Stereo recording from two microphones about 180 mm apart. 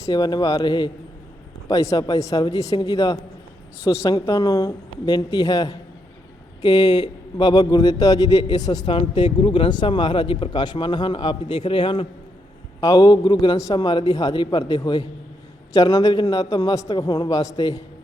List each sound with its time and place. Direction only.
0.0 s a man's voice: 20° left (ahead or behind)